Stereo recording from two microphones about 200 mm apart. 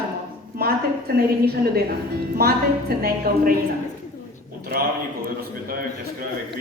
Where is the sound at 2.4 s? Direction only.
50° right (ahead or behind).